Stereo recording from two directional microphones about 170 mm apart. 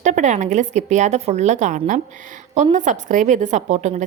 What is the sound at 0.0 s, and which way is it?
A woman's voice, 45° right (ahead or behind).